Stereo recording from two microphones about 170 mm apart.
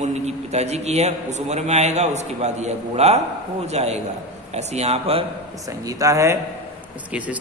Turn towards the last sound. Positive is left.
turn(degrees=-10)  # may be behind; listen again after turning